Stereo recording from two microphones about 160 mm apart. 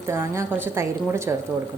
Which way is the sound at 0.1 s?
15° right (ahead or behind).